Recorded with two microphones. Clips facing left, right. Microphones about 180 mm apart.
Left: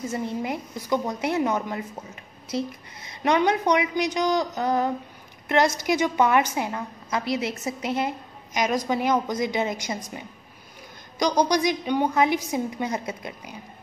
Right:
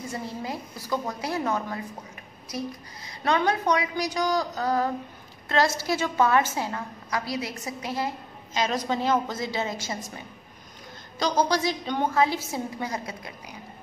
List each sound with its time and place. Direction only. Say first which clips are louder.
0.1 s a woman's voice: left 4 dB; 20° left (ahead or behind)